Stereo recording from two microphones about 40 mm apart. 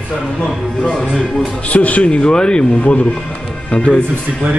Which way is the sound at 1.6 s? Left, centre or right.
Left.